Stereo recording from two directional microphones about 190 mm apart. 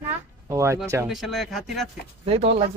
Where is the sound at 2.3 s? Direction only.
30° right (ahead or behind).